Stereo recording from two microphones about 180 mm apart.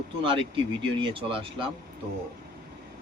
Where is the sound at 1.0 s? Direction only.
30° right (ahead or behind).